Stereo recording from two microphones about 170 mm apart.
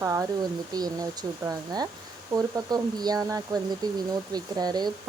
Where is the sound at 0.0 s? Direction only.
20° right (ahead or behind).